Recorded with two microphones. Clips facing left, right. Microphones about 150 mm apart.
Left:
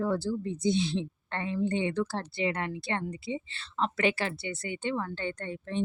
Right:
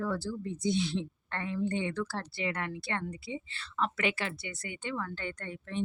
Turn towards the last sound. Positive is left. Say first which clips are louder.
# left 4 dB
turn(degrees=30)  # may be behind; listen again after turning